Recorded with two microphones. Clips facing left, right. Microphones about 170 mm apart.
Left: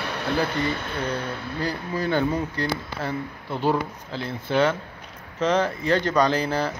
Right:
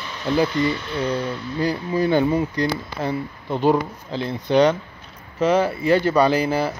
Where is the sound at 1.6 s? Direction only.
15° right (ahead or behind).